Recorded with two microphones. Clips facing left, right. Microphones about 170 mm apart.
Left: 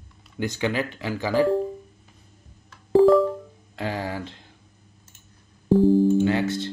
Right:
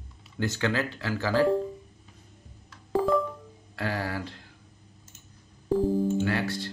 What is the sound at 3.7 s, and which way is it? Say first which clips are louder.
Speech: left 2 dB; 20° left (ahead or behind).